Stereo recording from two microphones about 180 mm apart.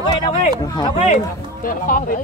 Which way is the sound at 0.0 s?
25° left (ahead or behind).